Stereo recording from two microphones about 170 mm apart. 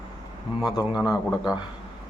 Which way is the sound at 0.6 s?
25° left (ahead or behind).